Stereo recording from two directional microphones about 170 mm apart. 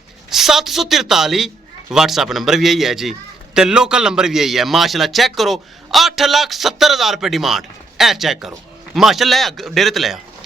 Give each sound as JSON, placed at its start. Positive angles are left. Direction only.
{"t": 0.3, "sound": "a man's voice", "side_deg": 0}